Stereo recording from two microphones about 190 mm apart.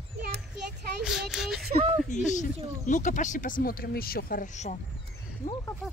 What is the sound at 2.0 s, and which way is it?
Speech, 40° left (ahead or behind).